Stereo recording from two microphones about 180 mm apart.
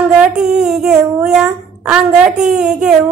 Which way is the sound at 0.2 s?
5° right (ahead or behind).